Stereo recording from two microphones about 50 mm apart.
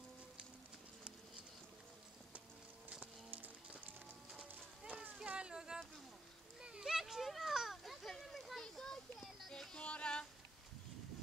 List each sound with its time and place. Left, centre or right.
3.3 s music: right
4.8 s a sound: right
6.6 s children playing: centre
9.5 s music: centre
9.8 s music: left